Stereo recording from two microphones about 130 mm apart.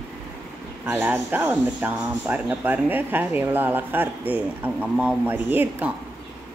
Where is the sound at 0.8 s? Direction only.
15° right (ahead or behind).